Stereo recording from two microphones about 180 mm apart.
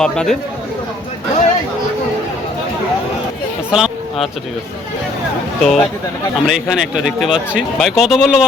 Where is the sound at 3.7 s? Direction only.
Centre (ahead or behind).